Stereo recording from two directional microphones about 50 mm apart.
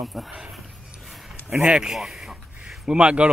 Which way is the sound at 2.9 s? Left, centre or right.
Right.